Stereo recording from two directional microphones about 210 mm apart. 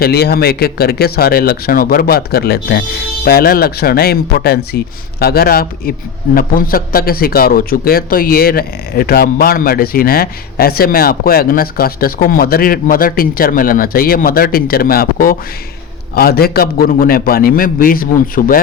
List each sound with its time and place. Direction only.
0.0 s speech: 50° left (ahead or behind)